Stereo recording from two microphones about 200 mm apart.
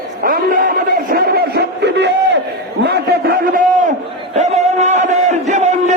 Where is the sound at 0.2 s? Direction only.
45° right (ahead or behind).